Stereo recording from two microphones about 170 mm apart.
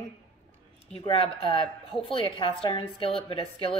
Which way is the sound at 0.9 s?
35° left (ahead or behind).